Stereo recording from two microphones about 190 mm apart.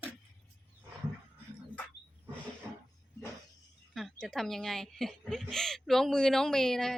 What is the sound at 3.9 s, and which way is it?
A woman's voice, centre (ahead or behind).